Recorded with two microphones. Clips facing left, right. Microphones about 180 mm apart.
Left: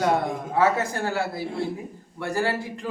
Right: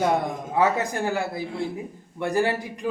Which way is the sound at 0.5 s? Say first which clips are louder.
Even; 15° right (ahead or behind).